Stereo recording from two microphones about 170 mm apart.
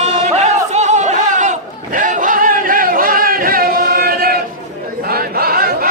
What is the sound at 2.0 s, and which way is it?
Singing, 50° right (ahead or behind).